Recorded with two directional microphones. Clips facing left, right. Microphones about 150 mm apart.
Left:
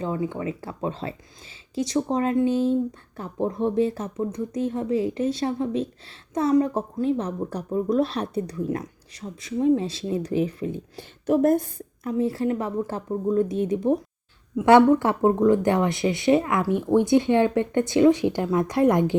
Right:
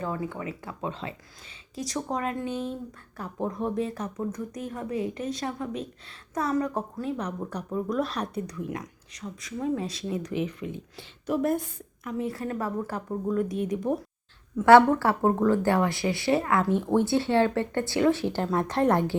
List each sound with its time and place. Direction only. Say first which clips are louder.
0.0 s speech: left 5 dB; 20° left (ahead or behind)
14.5 s speech: left 2 dB; 15° left (ahead or behind)